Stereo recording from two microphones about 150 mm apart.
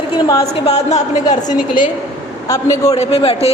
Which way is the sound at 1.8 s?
30° left (ahead or behind).